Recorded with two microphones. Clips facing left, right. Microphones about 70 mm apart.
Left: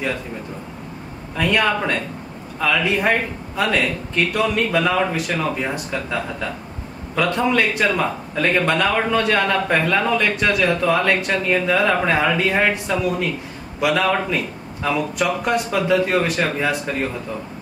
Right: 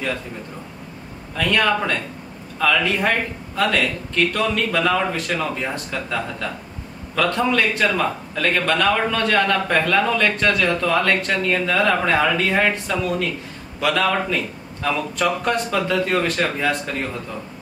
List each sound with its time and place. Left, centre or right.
1.3 s a man's voice: centre
7.2 s a man's voice: centre